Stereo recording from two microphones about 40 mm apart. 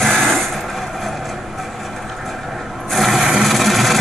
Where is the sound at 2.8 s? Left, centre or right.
Centre.